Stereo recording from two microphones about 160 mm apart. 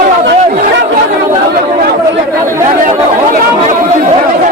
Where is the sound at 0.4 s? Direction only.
55° right (ahead or behind).